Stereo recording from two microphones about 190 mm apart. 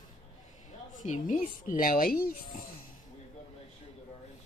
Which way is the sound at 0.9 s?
40° left (ahead or behind).